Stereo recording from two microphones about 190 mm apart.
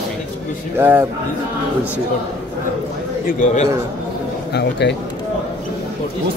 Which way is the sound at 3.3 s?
40° left (ahead or behind).